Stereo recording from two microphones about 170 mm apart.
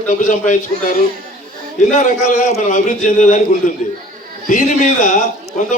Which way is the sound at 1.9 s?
45° left (ahead or behind).